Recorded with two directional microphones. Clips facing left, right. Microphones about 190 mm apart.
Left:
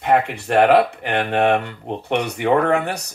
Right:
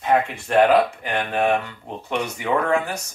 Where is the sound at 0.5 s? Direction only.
65° left (ahead or behind).